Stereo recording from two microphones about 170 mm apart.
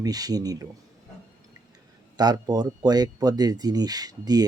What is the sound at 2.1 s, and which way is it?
Speech, 25° right (ahead or behind).